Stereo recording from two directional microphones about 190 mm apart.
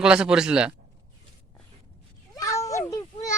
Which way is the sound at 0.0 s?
5° right (ahead or behind).